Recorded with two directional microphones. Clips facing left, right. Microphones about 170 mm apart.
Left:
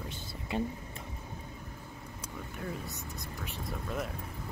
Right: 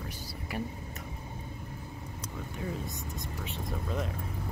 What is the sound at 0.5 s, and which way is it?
Speech, 25° left (ahead or behind).